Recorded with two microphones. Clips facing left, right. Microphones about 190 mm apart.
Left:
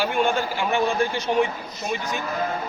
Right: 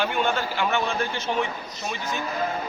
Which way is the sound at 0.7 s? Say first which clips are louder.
Left 4 dB; 15° left (ahead or behind).